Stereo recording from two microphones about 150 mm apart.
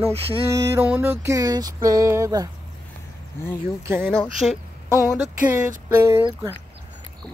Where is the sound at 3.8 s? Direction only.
15° right (ahead or behind).